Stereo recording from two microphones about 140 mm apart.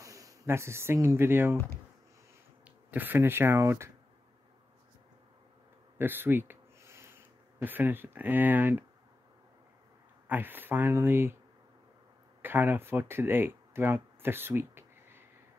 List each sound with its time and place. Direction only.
0.0 s speech: 25° right (ahead or behind)
2.6 s speech: 10° right (ahead or behind)
5.9 s a sound: 15° right (ahead or behind)
7.5 s speech: 15° right (ahead or behind)
10.2 s speech: 15° right (ahead or behind)
12.4 s speech: 15° right (ahead or behind)